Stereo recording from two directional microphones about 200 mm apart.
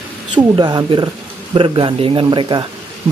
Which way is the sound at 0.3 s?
25° right (ahead or behind).